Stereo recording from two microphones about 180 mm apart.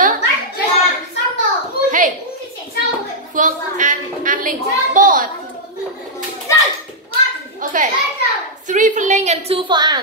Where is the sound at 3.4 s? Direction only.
45° right (ahead or behind).